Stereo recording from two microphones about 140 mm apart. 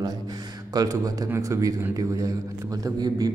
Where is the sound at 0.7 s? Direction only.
25° right (ahead or behind).